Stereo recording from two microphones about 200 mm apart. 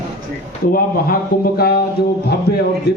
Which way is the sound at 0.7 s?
50° left (ahead or behind).